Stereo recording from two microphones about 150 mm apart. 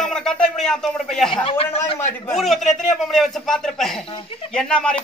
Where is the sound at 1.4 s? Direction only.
40° left (ahead or behind).